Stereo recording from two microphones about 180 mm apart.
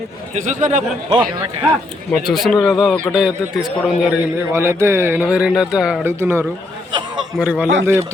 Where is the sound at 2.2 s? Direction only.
Centre (ahead or behind).